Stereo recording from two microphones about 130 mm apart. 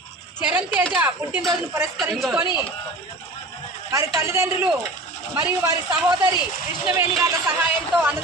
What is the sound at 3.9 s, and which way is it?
A man's voice, 25° right (ahead or behind).